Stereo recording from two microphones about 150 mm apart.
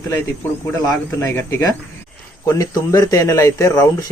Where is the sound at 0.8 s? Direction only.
20° left (ahead or behind).